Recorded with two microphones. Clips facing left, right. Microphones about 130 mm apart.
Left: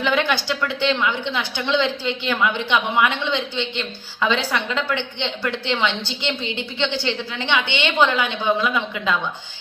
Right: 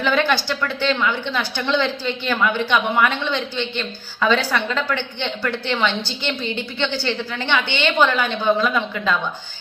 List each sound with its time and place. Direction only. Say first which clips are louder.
0.0 s a woman's voice: right 2 dB; 20° left (ahead or behind)